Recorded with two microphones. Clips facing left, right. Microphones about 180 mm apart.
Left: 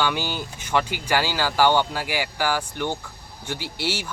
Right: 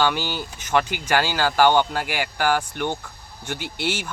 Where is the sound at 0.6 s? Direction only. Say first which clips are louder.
Right 2 dB; 45° right (ahead or behind).